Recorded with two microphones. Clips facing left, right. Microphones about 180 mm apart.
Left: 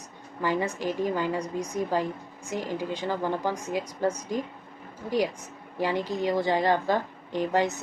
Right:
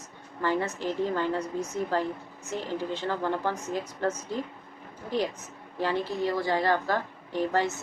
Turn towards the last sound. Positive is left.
turn(degrees=15)  # may be behind; listen again after turning